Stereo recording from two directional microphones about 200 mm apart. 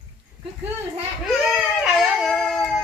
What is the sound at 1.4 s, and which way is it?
Dog, centre (ahead or behind).